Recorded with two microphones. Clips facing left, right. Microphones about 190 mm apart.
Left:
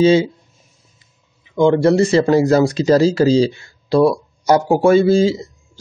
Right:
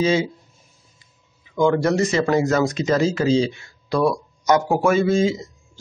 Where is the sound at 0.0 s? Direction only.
30° left (ahead or behind).